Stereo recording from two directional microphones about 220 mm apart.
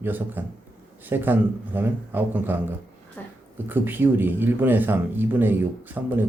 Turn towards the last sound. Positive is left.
turn(degrees=-10)  # may be behind; listen again after turning